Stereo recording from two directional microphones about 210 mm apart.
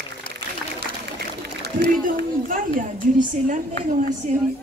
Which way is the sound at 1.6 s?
45° right (ahead or behind).